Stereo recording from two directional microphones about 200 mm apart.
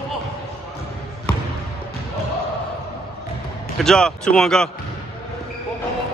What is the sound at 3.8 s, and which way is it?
Speech, 5° left (ahead or behind).